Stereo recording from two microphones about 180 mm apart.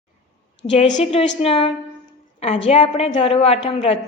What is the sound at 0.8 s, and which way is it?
A woman's voice, 40° left (ahead or behind).